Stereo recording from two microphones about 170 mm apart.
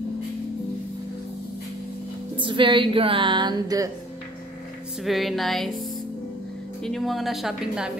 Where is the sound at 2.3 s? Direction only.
30° right (ahead or behind).